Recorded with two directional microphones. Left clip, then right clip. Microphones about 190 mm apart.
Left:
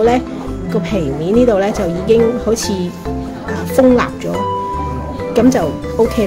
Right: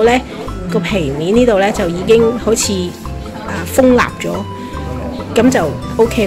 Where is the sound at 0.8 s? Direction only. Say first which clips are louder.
Right 2 dB; centre (ahead or behind).